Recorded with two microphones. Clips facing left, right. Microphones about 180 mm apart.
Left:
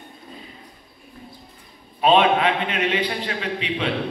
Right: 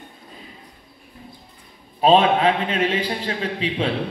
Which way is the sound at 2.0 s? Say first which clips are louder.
Right 1 dB; 30° right (ahead or behind).